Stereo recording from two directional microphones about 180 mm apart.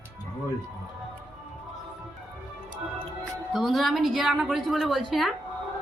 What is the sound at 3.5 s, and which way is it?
A woman's voice, centre (ahead or behind).